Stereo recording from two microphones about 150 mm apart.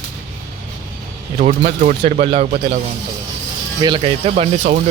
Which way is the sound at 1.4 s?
65° right (ahead or behind).